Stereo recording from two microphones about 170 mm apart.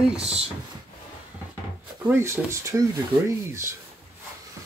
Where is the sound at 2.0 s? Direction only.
15° right (ahead or behind).